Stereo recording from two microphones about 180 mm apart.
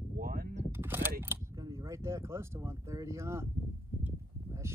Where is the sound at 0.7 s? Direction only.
10° right (ahead or behind).